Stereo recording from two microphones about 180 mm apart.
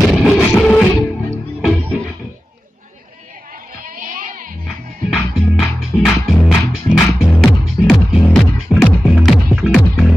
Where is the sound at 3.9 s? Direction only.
45° right (ahead or behind).